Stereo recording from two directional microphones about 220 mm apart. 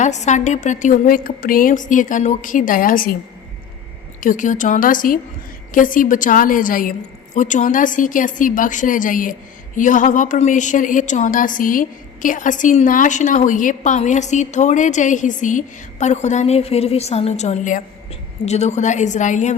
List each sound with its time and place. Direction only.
0.0 s a woman's voice: 30° left (ahead or behind)
4.2 s a woman's voice: 35° left (ahead or behind)